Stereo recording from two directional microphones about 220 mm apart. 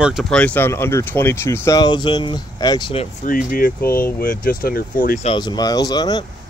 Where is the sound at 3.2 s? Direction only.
40° left (ahead or behind).